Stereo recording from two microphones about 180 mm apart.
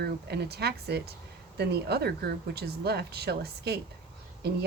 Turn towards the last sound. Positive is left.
turn(degrees=-65)  # may be behind; listen again after turning